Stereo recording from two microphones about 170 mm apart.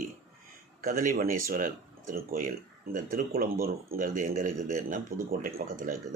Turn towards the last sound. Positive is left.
turn(degrees=-55)  # may be behind; listen again after turning